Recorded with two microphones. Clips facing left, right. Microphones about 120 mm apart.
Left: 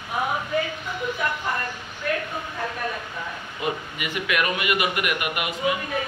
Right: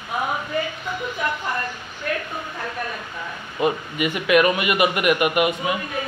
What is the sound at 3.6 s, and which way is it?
A man's voice, 25° right (ahead or behind).